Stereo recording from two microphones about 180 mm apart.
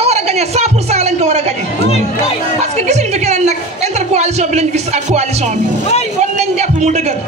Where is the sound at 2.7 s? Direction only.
40° right (ahead or behind).